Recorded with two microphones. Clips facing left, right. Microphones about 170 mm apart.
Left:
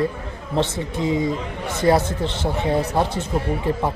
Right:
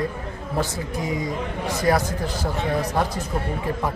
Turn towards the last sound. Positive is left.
turn(degrees=30)  # may be behind; listen again after turning